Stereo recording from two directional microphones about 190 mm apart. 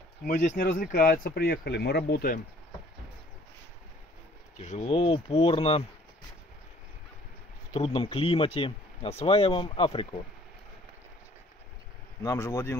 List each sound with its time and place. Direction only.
0.3 s speech: 40° left (ahead or behind)
4.6 s speech: 35° left (ahead or behind)
7.7 s speech: 30° left (ahead or behind)
12.2 s speech: 15° left (ahead or behind)